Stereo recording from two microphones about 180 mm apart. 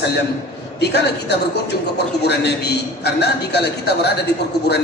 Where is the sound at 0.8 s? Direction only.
70° left (ahead or behind).